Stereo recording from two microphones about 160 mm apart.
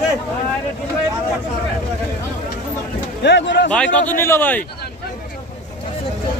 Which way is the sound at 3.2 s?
90° left.